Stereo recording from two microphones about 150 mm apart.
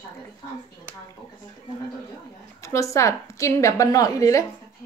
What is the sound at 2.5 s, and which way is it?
A woman's voice, 20° left (ahead or behind).